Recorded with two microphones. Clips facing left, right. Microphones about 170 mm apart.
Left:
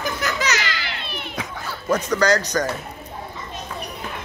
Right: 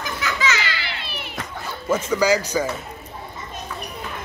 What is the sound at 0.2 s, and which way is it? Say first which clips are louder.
Children playing: right 2 dB; 40° left (ahead or behind).